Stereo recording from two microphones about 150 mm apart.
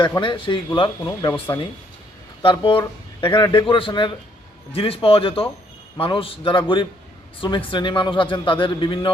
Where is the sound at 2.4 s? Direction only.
35° left (ahead or behind).